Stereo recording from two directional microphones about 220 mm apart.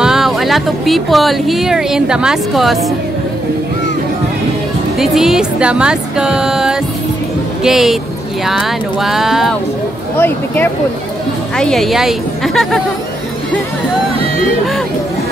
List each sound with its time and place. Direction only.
0.0 s speech: centre (ahead or behind)
4.9 s speech: centre (ahead or behind)
10.1 s speech: 10° left (ahead or behind)